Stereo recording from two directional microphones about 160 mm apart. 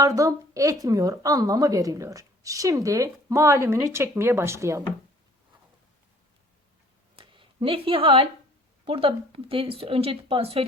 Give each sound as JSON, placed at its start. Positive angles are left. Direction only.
{"t": 0.0, "sound": "a woman's voice", "side_deg": -20}
{"t": 7.2, "sound": "a sound", "side_deg": -35}
{"t": 8.8, "sound": "speech", "side_deg": -35}